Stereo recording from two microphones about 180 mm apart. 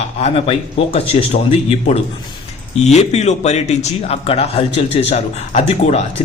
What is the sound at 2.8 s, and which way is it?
Speech, 40° left (ahead or behind).